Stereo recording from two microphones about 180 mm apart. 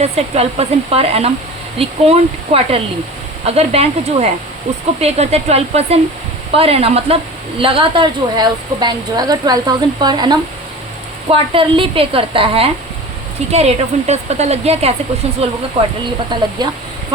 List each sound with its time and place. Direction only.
0.0 s a woman's voice: 35° right (ahead or behind)
16.6 s a woman's voice: 25° right (ahead or behind)